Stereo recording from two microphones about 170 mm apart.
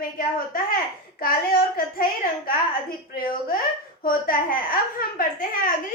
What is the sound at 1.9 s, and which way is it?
A woman's voice, 60° left (ahead or behind).